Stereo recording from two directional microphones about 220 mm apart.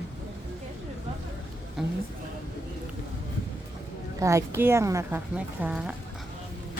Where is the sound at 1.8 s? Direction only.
Centre (ahead or behind).